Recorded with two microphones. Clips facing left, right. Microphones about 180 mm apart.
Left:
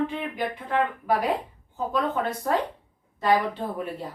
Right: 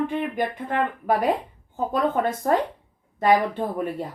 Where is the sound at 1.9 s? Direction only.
50° right (ahead or behind).